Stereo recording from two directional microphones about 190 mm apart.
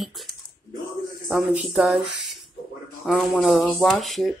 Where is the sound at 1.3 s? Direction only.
5° right (ahead or behind).